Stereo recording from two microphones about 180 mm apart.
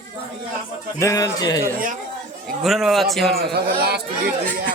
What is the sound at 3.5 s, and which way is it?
Speech, 60° right (ahead or behind).